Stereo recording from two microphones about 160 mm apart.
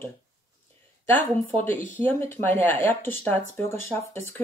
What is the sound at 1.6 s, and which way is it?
Speech, 10° left (ahead or behind).